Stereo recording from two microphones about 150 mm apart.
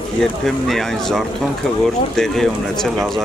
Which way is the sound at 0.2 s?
Centre (ahead or behind).